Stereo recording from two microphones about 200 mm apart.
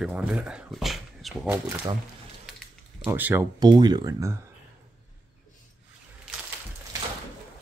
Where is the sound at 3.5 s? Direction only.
20° right (ahead or behind).